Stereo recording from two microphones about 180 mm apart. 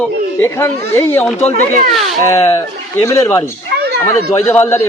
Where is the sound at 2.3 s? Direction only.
15° left (ahead or behind).